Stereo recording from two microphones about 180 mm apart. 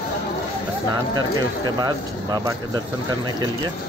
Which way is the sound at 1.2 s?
20° right (ahead or behind).